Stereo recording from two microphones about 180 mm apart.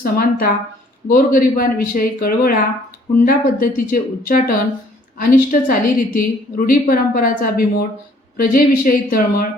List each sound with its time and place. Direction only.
0.0 s a woman's voice: 55° left (ahead or behind)